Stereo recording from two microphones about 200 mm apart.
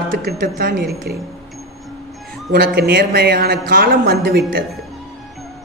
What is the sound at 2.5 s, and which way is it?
A man's voice, 50° right (ahead or behind).